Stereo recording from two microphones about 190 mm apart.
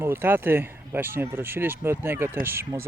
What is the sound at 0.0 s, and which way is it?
Speech, 10° right (ahead or behind).